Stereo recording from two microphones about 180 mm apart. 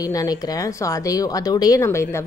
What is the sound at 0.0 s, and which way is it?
Speech, 20° left (ahead or behind).